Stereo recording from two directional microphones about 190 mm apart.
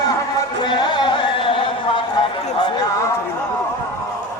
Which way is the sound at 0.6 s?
25° left (ahead or behind).